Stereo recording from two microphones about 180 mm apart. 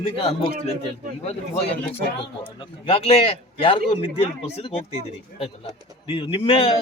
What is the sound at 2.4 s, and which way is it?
A man's voice, 30° left (ahead or behind).